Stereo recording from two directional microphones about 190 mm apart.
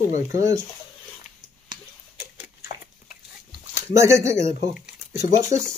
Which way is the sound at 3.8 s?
15° right (ahead or behind).